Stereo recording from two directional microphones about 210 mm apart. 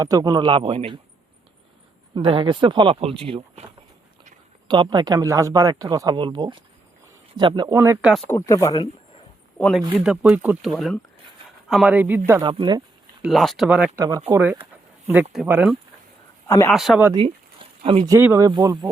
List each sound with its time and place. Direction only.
0.0 s speech: 15° right (ahead or behind)
2.1 s speech: 25° right (ahead or behind)
4.7 s speech: 20° right (ahead or behind)
7.8 s speech: 5° right (ahead or behind)
8.3 s speech: 15° left (ahead or behind)
9.6 s speech: 5° left (ahead or behind)
9.9 s speech: 5° right (ahead or behind)
12.4 s speech: 20° right (ahead or behind)
13.2 s speech: centre (ahead or behind)
16.5 s speech: 15° left (ahead or behind)
16.7 s speech: centre (ahead or behind)
17.1 s speech: 25° right (ahead or behind)
18.1 s speech: 10° right (ahead or behind)